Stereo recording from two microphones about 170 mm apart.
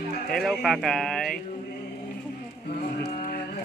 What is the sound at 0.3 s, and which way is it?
A man's voice, centre (ahead or behind).